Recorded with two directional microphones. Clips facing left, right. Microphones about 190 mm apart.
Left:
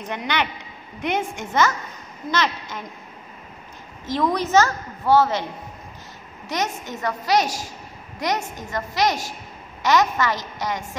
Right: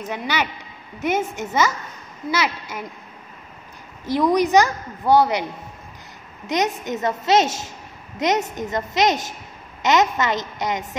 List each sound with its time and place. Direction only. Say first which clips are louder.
0.1 s a woman's voice: even; 5° right (ahead or behind)
4.0 s a woman's voice: right 4 dB; 15° right (ahead or behind)
6.4 s a woman's voice: right 4 dB; 20° right (ahead or behind)